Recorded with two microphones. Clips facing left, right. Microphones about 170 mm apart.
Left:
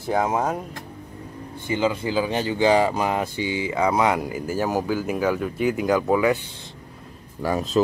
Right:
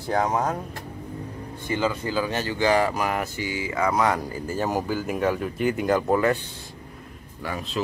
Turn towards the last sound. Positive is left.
turn(degrees=40)  # may be behind; listen again after turning